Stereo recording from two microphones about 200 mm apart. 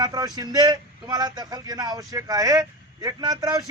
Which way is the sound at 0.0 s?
20° right (ahead or behind).